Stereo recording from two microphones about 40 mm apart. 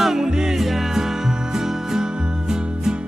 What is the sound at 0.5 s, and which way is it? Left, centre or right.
Music, centre.